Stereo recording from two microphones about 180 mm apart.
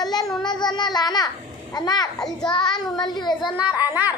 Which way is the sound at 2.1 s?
5° left (ahead or behind).